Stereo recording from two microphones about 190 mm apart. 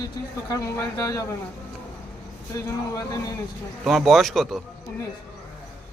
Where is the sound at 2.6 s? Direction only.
20° left (ahead or behind).